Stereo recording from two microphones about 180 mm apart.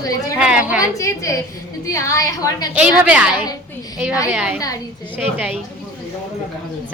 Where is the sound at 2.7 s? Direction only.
10° right (ahead or behind).